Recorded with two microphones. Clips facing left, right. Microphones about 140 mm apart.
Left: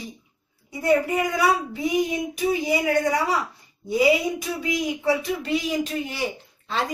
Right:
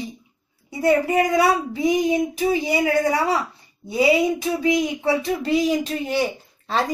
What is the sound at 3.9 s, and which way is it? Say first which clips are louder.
A woman's voice: right 2 dB; 30° right (ahead or behind).